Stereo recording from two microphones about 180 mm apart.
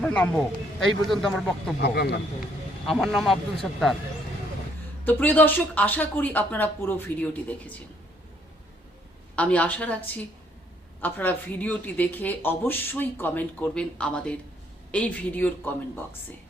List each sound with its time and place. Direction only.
0.0 s speech: 5° left (ahead or behind)
1.8 s speech: 65° left (ahead or behind)
2.8 s speech: centre (ahead or behind)
5.0 s speech: 10° left (ahead or behind)
9.3 s speech: 5° left (ahead or behind)
11.0 s speech: 10° left (ahead or behind)